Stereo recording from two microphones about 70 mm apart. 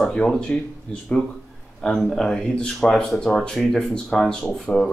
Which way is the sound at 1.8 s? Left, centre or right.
Centre.